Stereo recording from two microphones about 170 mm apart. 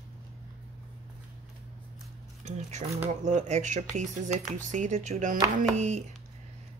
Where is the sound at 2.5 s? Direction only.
40° right (ahead or behind).